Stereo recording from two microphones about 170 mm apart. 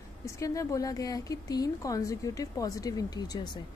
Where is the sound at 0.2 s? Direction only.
20° left (ahead or behind).